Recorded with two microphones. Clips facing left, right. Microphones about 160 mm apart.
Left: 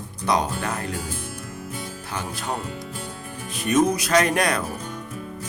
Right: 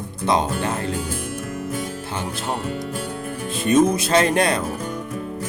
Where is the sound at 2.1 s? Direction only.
25° right (ahead or behind).